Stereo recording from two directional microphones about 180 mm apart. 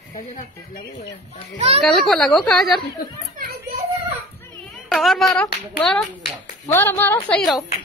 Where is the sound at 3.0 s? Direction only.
50° left (ahead or behind).